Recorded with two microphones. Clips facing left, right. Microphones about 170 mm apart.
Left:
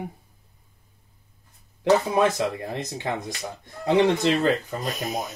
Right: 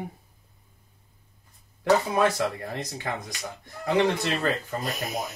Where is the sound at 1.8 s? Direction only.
20° left (ahead or behind).